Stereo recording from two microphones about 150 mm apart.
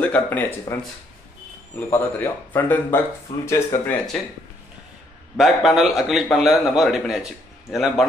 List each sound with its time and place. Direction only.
0.0 s speech: 10° left (ahead or behind)
1.8 s speech: 15° left (ahead or behind)
5.4 s a man's voice: centre (ahead or behind)